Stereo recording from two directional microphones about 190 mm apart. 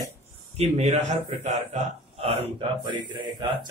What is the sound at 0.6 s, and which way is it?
A man's voice, 35° right (ahead or behind).